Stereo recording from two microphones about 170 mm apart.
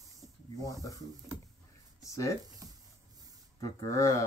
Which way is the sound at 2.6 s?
20° right (ahead or behind).